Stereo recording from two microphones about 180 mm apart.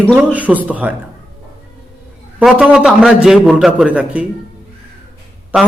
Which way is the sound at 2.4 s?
5° right (ahead or behind).